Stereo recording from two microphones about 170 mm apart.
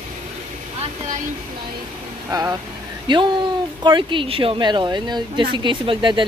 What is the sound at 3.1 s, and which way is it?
Speech, 30° right (ahead or behind).